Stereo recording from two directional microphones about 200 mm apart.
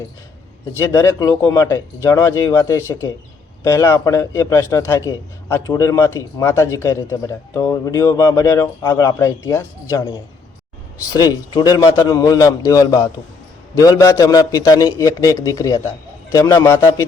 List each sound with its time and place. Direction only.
0.8 s a man's voice: 10° left (ahead or behind)